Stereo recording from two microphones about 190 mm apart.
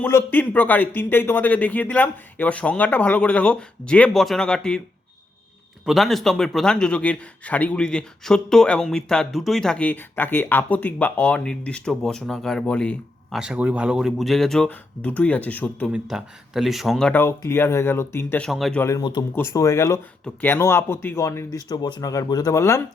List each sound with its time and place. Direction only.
0.0 s speech: 10° left (ahead or behind)
5.8 s a man's voice: centre (ahead or behind)
13.4 s a man's voice: 5° right (ahead or behind)
15.9 s speech: centre (ahead or behind)
18.8 s speech: 15° left (ahead or behind)